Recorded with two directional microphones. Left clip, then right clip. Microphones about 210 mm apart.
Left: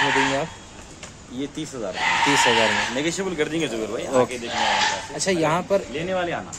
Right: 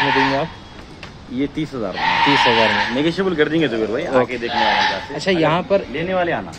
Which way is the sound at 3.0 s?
25° right (ahead or behind).